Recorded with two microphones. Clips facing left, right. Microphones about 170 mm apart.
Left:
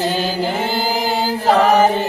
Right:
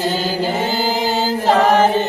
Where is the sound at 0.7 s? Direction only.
10° left (ahead or behind).